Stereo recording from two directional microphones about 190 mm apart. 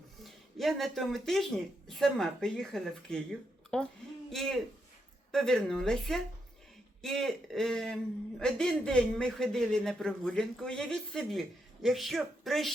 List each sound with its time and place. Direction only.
0.2 s speech: centre (ahead or behind)